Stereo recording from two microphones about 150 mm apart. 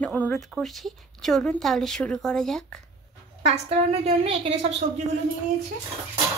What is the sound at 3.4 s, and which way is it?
A woman's voice, 40° right (ahead or behind).